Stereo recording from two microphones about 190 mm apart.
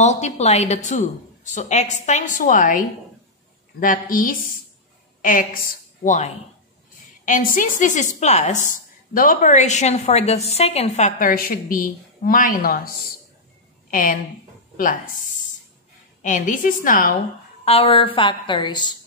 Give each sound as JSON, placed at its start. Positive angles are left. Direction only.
{"t": 0.0, "sound": "a woman's voice", "side_deg": 35}
{"t": 17.6, "sound": "a woman's voice", "side_deg": 30}